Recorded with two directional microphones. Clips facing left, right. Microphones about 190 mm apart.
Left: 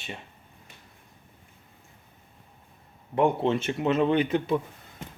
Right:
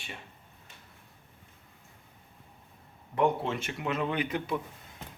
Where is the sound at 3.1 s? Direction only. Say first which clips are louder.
Left 4 dB; 25° left (ahead or behind).